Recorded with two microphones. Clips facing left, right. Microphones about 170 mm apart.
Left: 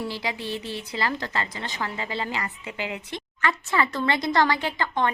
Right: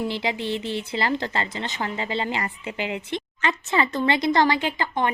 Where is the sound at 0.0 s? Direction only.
25° right (ahead or behind).